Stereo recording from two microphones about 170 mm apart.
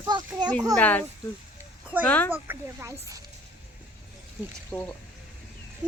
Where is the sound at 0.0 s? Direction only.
25° right (ahead or behind).